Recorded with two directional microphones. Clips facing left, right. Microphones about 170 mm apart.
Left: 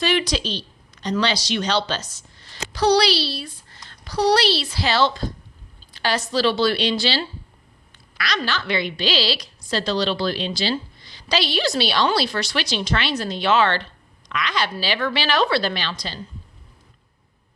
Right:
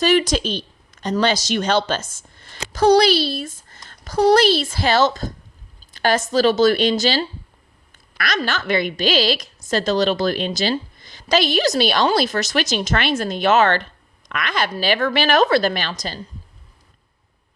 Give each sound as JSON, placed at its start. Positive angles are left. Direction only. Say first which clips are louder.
{"t": 0.0, "sound": "a woman's voice", "louder": "right 5 dB", "side_deg": -45}